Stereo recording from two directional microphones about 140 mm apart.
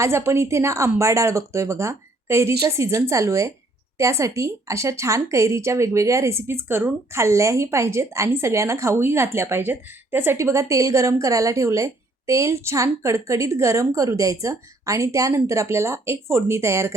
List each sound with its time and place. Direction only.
0.0 s a woman's voice: 20° right (ahead or behind)